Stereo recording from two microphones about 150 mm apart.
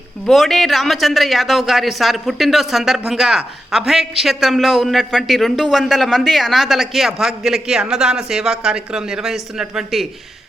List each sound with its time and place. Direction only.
0.3 s speech: centre (ahead or behind)